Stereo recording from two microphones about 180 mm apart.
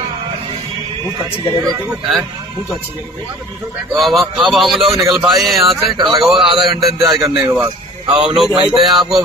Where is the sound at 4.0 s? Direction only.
Centre (ahead or behind).